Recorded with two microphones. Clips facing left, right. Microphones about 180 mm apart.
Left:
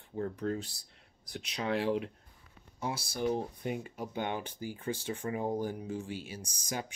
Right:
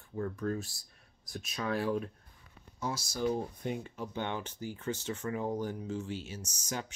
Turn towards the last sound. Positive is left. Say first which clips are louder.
# left 1 dB
turn(degrees=15)  # may be behind; listen again after turning